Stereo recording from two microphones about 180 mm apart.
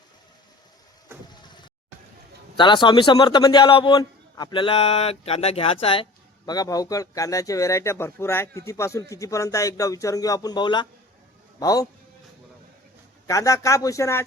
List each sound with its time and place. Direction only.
1.3 s vehicle: 25° left (ahead or behind)
2.6 s a man's voice: 25° left (ahead or behind)
13.2 s speech: 15° left (ahead or behind)